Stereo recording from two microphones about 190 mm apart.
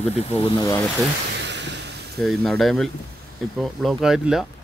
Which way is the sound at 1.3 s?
65° right (ahead or behind).